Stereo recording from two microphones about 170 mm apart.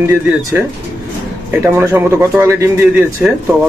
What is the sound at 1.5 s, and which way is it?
Speech, 10° right (ahead or behind).